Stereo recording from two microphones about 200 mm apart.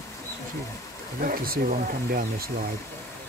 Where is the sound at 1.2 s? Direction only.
45° right (ahead or behind).